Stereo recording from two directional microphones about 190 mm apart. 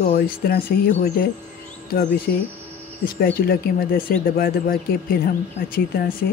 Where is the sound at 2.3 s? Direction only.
50° left (ahead or behind).